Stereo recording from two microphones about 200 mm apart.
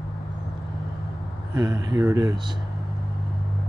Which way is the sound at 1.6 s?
20° right (ahead or behind).